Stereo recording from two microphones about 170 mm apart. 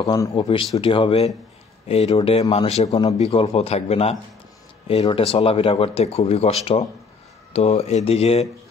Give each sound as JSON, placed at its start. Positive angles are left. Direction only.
{"t": 0.0, "sound": "speech", "side_deg": 20}